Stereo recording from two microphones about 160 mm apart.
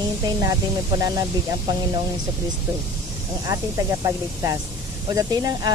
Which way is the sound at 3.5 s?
20° right (ahead or behind).